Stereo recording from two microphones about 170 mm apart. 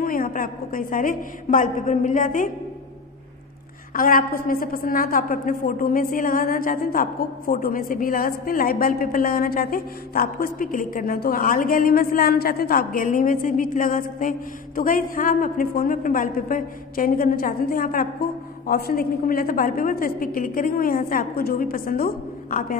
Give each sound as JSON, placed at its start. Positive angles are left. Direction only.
{"t": 0.0, "sound": "a woman's voice", "side_deg": 55}
{"t": 3.9, "sound": "a woman's voice", "side_deg": 55}